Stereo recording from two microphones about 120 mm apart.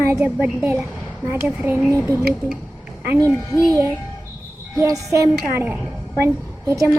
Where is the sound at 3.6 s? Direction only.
30° right (ahead or behind).